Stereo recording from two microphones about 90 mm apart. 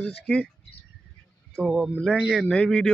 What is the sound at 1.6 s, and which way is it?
Speech, centre (ahead or behind).